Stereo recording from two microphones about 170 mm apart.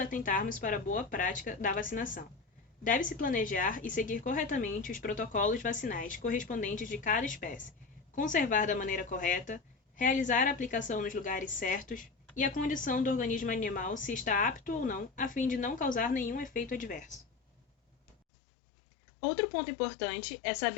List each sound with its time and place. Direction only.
0.0 s a woman's voice: 55° left (ahead or behind)